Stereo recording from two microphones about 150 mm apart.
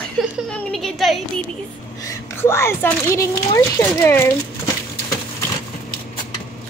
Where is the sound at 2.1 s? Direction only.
20° left (ahead or behind).